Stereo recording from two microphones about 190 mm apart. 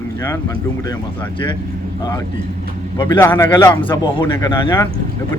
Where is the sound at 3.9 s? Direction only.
25° left (ahead or behind).